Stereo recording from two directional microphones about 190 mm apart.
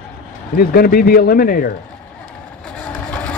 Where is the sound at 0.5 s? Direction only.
50° left (ahead or behind).